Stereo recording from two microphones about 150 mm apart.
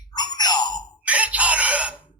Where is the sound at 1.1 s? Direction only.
10° right (ahead or behind).